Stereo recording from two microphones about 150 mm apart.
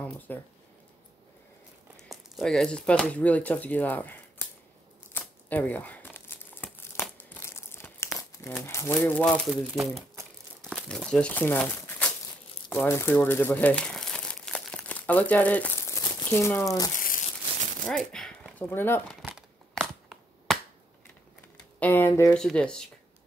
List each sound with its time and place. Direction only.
0.3 s speech: 10° left (ahead or behind)
2.0 s speech: centre (ahead or behind)
5.1 s crumpling: 10° left (ahead or behind)
8.5 s speech: 15° left (ahead or behind)
9.1 s speech: 5° left (ahead or behind)
12.7 s crumpling: 15° left (ahead or behind)
17.8 s speech: 5° left (ahead or behind)
18.6 s speech: 15° left (ahead or behind)
19.2 s crumpling: centre (ahead or behind)
21.7 s speech: 10° left (ahead or behind)
22.3 s speech: 5° left (ahead or behind)